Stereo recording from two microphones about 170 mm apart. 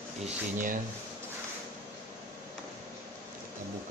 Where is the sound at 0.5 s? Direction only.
50° right (ahead or behind).